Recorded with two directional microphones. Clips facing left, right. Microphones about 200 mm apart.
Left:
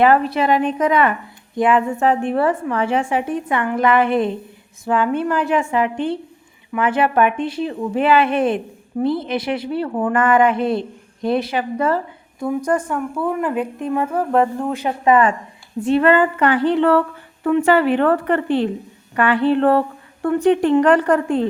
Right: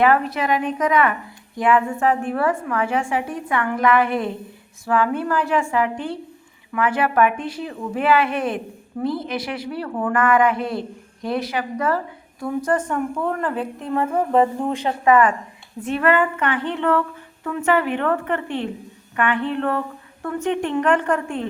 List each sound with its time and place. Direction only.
0.0 s a woman's voice: 30° left (ahead or behind)
12.4 s a woman's voice: 15° left (ahead or behind)
14.1 s speech: 10° right (ahead or behind)
14.7 s a woman's voice: 10° left (ahead or behind)
15.0 s a woman's voice: 25° left (ahead or behind)